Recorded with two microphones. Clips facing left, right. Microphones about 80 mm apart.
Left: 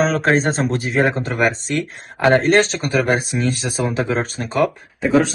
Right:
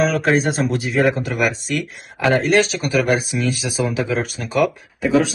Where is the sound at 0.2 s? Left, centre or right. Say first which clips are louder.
Left 1 dB; centre.